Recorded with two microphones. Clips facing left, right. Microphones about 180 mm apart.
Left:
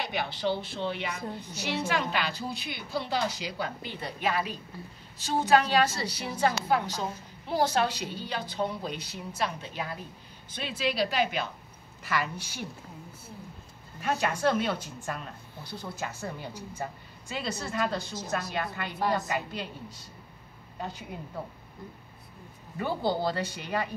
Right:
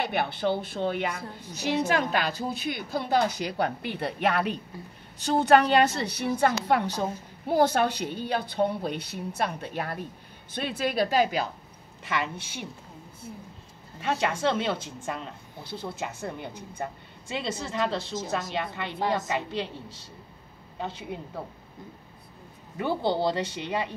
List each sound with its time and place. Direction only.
0.0 s a woman's voice: 55° right (ahead or behind)
12.0 s a woman's voice: 25° right (ahead or behind)
14.2 s a woman's voice: 25° right (ahead or behind)
22.8 s a woman's voice: 20° right (ahead or behind)